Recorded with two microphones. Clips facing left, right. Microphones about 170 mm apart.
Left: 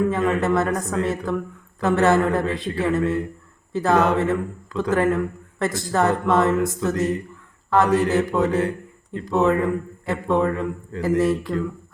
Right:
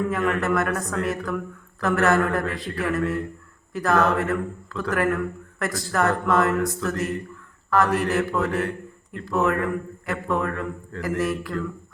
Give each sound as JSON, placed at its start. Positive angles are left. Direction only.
{"t": 0.1, "sound": "a man's voice", "side_deg": 25}